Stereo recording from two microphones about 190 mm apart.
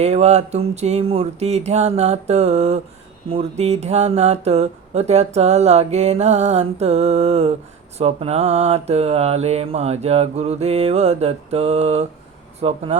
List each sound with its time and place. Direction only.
0.0 s speech: 35° right (ahead or behind)